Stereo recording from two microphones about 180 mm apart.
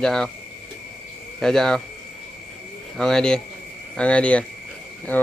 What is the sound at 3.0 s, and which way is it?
Speech, 5° left (ahead or behind).